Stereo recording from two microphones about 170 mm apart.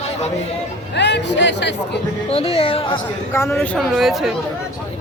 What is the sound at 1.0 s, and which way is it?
Speech, 90° left.